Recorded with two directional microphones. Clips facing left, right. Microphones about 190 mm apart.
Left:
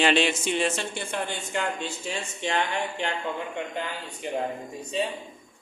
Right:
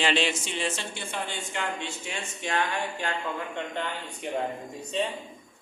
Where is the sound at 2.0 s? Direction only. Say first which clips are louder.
Left 4 dB; 30° left (ahead or behind).